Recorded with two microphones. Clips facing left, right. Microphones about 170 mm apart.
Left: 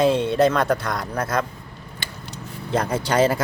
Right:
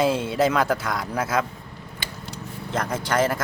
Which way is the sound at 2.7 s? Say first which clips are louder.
Left 4 dB; 10° left (ahead or behind).